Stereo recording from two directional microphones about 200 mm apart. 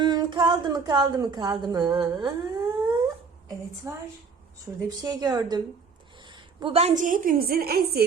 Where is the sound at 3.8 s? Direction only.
15° right (ahead or behind).